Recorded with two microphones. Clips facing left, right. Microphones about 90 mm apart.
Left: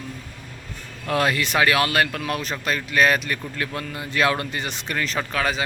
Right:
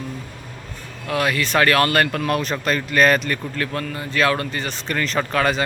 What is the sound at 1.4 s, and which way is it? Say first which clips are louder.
Speech: right 3 dB; 10° left (ahead or behind).